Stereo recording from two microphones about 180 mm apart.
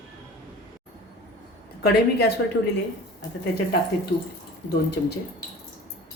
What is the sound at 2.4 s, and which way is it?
Speech, 70° left (ahead or behind).